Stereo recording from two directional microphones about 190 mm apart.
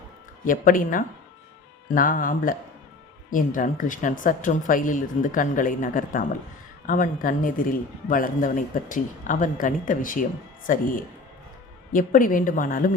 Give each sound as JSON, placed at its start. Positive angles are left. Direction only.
{"t": 0.4, "sound": "speech", "side_deg": 45}